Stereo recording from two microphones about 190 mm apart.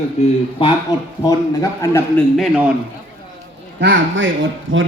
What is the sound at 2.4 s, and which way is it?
Speech, 5° right (ahead or behind).